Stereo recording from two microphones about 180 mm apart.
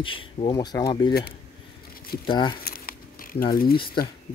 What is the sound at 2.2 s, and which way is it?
Speech, 25° left (ahead or behind).